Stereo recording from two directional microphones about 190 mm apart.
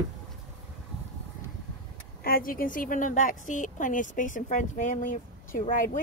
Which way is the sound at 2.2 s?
50° left (ahead or behind).